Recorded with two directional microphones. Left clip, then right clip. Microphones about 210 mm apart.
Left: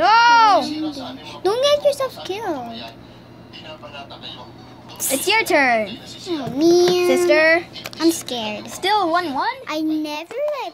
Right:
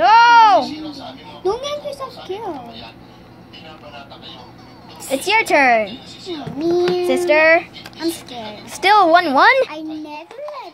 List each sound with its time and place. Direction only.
0.0 s a sound: centre (ahead or behind)
1.4 s a sound: 45° left (ahead or behind)
5.1 s a woman's voice: 5° right (ahead or behind)
6.6 s a child's voice: 50° left (ahead or behind)
7.1 s a woman's voice: centre (ahead or behind)
8.0 s a child's voice: 45° left (ahead or behind)
8.8 s a woman's voice: 25° right (ahead or behind)
9.4 s speech: 45° right (ahead or behind)
9.7 s a child's voice: 45° left (ahead or behind)